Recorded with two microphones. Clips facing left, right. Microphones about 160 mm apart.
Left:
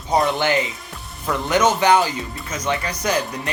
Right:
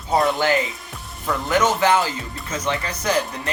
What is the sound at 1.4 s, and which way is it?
Speech, 20° left (ahead or behind).